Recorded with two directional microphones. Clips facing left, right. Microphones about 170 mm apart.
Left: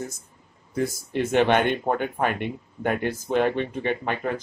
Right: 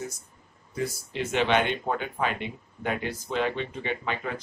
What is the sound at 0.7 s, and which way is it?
Speech, 50° left (ahead or behind).